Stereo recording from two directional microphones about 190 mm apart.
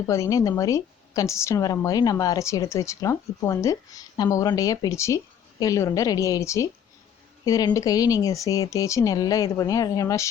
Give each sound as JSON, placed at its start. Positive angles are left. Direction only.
{"t": 0.1, "sound": "a woman's voice", "side_deg": 15}